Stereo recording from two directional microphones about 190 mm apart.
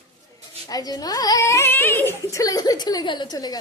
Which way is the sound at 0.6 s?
20° left (ahead or behind).